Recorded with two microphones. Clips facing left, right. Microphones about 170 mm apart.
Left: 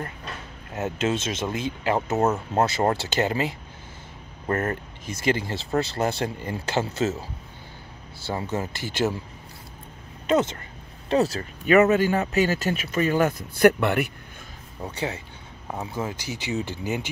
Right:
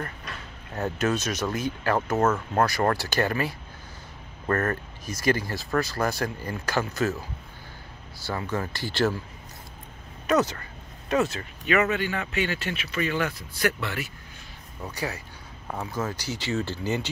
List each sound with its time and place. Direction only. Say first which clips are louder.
0.7 s speech: left 1 dB; 25° left (ahead or behind)
8.3 s speech: left 1 dB; 25° left (ahead or behind)
10.2 s speech: left 1 dB; 25° left (ahead or behind)
11.1 s speech: left 3 dB; 35° left (ahead or behind)
13.6 s speech: left 10 dB; 55° left (ahead or behind)
14.8 s speech: left 2 dB; 25° left (ahead or behind)
15.7 s speech: even; 15° left (ahead or behind)